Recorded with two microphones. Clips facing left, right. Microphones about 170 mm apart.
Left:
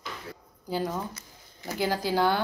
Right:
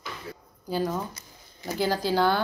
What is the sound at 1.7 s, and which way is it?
Speech, 15° left (ahead or behind).